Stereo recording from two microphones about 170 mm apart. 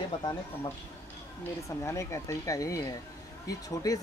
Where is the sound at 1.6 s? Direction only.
15° left (ahead or behind).